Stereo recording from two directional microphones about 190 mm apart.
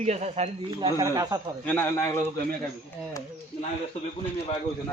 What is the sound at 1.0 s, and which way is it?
Speech, 20° right (ahead or behind).